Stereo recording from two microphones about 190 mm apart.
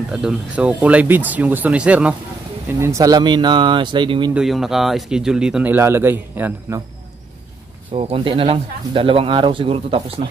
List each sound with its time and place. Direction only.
0.1 s speech: 5° right (ahead or behind)
2.8 s speech: 15° right (ahead or behind)
4.3 s speech: centre (ahead or behind)
7.9 s speech: 30° right (ahead or behind)